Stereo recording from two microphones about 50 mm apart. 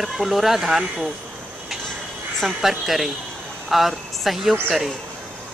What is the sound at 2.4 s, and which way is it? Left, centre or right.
Speech, centre.